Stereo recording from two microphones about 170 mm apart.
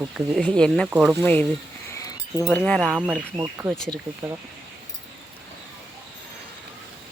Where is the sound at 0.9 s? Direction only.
10° right (ahead or behind).